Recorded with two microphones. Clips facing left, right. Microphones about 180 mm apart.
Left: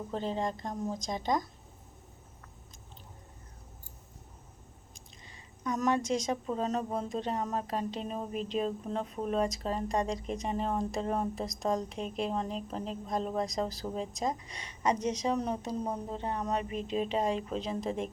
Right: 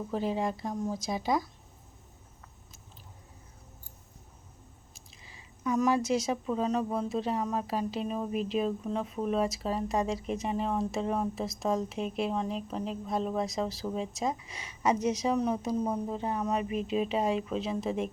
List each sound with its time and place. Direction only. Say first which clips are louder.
0.1 s speech: right 3 dB; 10° right (ahead or behind)
4.9 s speech: even; 5° right (ahead or behind)
16.8 s speech: right 2 dB; 35° left (ahead or behind)
17.1 s speech: right 2 dB; 5° right (ahead or behind)